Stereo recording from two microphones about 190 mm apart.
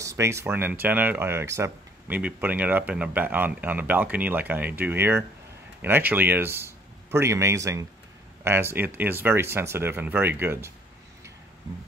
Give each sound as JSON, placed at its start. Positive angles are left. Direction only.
{"t": 0.0, "sound": "speech", "side_deg": -15}